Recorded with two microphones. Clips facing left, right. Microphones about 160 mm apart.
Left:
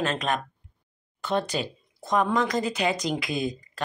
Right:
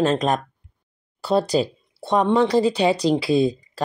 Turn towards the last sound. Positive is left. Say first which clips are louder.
# right 10 dB
turn(degrees=-30)  # may be behind; listen again after turning